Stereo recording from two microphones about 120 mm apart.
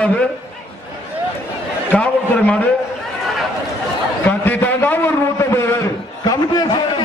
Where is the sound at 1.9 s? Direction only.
10° left (ahead or behind).